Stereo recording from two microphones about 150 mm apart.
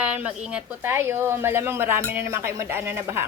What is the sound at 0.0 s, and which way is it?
Speech, 10° right (ahead or behind).